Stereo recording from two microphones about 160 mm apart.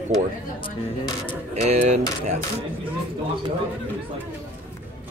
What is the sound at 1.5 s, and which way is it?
Speech, 45° right (ahead or behind).